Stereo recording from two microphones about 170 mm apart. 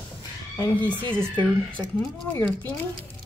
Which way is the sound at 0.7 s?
10° left (ahead or behind).